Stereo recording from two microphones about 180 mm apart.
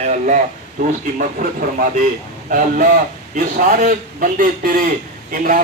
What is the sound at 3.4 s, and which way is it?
Speech, 50° right (ahead or behind).